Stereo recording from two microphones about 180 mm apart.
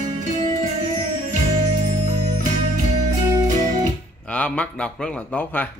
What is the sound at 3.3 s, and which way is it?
Music, 20° right (ahead or behind).